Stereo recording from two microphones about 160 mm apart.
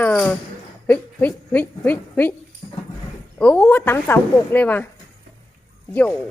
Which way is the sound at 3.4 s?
5° left (ahead or behind).